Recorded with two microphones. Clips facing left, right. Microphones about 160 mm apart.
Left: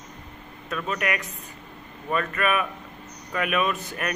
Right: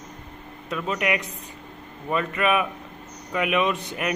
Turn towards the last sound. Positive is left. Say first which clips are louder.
# right 2 dB
turn(degrees=-15)  # may be behind; listen again after turning